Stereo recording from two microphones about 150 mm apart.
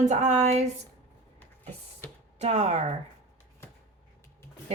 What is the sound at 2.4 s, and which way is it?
Speech, 50° right (ahead or behind).